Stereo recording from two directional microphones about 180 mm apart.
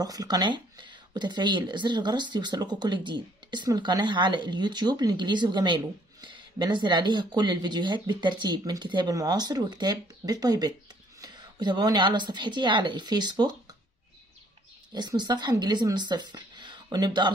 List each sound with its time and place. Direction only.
0.0 s speech: 20° right (ahead or behind)
15.0 s speech: 25° right (ahead or behind)